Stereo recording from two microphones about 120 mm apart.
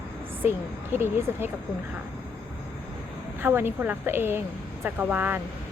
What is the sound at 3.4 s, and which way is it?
A woman's voice, 15° right (ahead or behind).